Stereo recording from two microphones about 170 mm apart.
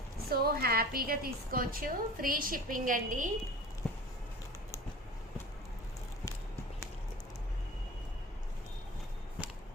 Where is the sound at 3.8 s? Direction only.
Centre (ahead or behind).